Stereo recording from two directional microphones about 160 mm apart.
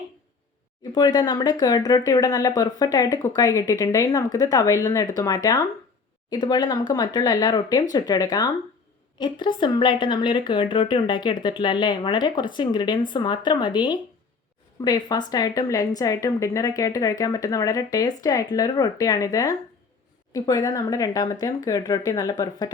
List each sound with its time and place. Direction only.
0.9 s speech: 25° left (ahead or behind)